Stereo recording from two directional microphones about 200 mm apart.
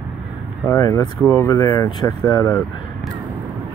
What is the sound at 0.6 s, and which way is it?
Speech, 15° left (ahead or behind).